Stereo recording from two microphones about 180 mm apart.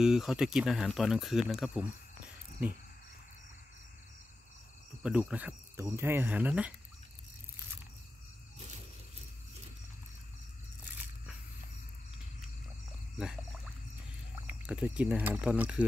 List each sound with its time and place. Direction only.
0.0 s speech: 5° right (ahead or behind)
5.0 s speech: 5° right (ahead or behind)
13.2 s speech: 5° right (ahead or behind)
14.7 s speech: 5° right (ahead or behind)